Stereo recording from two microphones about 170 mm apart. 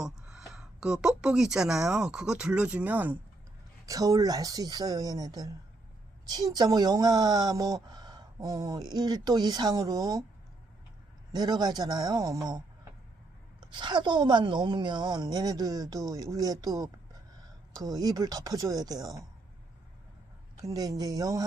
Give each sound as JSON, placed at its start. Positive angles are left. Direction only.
{"t": 0.0, "sound": "speech", "side_deg": -5}
{"t": 3.8, "sound": "a woman's voice", "side_deg": -20}
{"t": 11.3, "sound": "a woman's voice", "side_deg": -25}
{"t": 20.6, "sound": "a woman's voice", "side_deg": -20}